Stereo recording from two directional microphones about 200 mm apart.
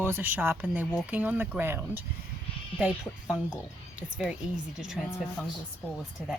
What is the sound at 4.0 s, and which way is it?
Speech, centre (ahead or behind).